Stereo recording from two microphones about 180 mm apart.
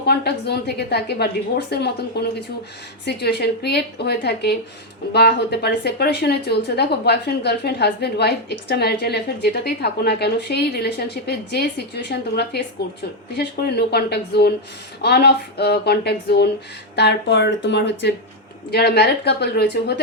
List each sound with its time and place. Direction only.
0.0 s a woman's voice: 65° left (ahead or behind)
18.7 s a woman's voice: 65° left (ahead or behind)